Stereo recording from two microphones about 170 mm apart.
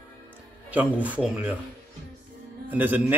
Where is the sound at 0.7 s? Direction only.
10° right (ahead or behind).